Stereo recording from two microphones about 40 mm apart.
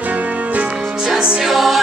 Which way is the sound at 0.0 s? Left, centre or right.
Right.